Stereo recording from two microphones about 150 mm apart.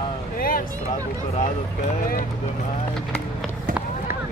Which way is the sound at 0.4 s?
70° left (ahead or behind).